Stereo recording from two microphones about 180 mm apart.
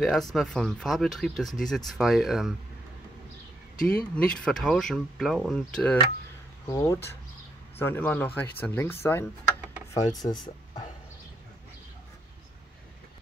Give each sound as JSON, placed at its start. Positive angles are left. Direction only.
{"t": 0.0, "sound": "speech", "side_deg": 0}
{"t": 4.1, "sound": "speech", "side_deg": 5}
{"t": 6.7, "sound": "speech", "side_deg": 15}